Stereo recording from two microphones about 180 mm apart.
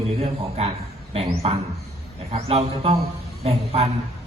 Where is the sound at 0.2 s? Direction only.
35° right (ahead or behind).